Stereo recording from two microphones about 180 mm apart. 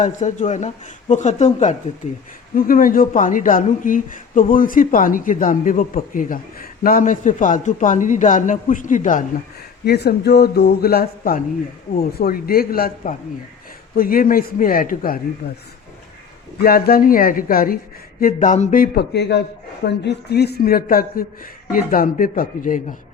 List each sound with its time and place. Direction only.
0.0 s speech: 45° left (ahead or behind)
2.6 s speech: 50° left (ahead or behind)
9.8 s speech: 65° left (ahead or behind)
15.4 s speech: 65° left (ahead or behind)
16.6 s speech: 55° left (ahead or behind)